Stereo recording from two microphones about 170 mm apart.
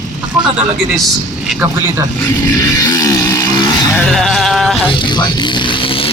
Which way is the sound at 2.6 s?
20° left (ahead or behind).